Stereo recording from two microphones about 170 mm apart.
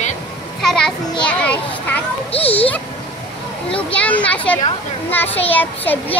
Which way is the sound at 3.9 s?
10° left (ahead or behind).